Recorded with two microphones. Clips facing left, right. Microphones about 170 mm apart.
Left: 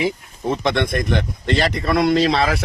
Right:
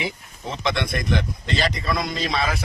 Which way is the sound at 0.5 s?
55° left (ahead or behind).